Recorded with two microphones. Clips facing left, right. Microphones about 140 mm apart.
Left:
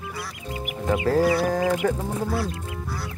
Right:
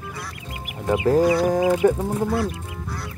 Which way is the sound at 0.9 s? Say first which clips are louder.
Right 3 dB; 20° right (ahead or behind).